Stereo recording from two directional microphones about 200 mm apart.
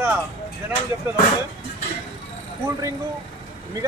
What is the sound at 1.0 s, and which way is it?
Speech, 10° right (ahead or behind).